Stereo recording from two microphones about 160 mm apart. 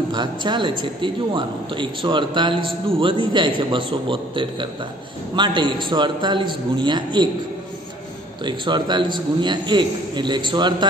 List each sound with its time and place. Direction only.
0.1 s a man's voice: 30° right (ahead or behind)
8.5 s a man's voice: 30° right (ahead or behind)